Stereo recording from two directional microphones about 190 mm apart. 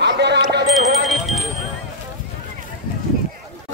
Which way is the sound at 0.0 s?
65° right (ahead or behind).